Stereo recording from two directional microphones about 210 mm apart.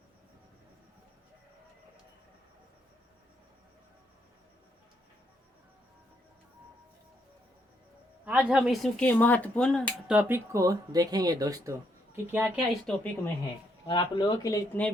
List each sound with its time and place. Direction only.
8.2 s speech: 5° right (ahead or behind)
12.8 s speech: 5° left (ahead or behind)
13.8 s speech: 20° left (ahead or behind)